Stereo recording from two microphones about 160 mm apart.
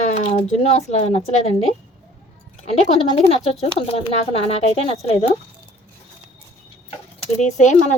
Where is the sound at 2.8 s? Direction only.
40° left (ahead or behind).